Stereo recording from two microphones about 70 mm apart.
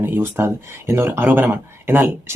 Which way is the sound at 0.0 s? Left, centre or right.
Right.